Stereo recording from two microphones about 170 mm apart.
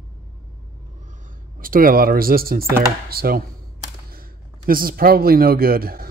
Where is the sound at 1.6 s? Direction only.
55° right (ahead or behind).